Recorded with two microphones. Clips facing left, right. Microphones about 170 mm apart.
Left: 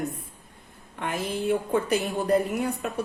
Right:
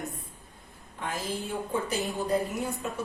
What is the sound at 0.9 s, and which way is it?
A woman's voice, 65° left (ahead or behind).